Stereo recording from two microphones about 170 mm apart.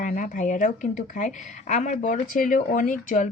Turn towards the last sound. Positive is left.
turn(degrees=50)  # may be behind; listen again after turning